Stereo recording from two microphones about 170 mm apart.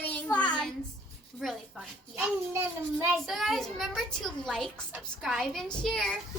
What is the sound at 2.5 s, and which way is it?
Speech, 15° right (ahead or behind).